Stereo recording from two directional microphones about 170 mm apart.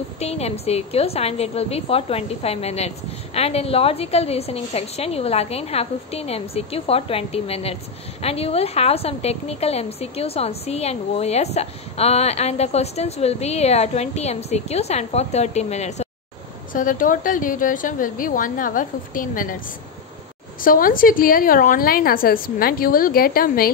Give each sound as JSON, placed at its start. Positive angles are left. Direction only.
{"t": 0.2, "sound": "a woman's voice", "side_deg": 40}
{"t": 16.7, "sound": "a woman's voice", "side_deg": 50}
{"t": 20.6, "sound": "a woman's voice", "side_deg": 55}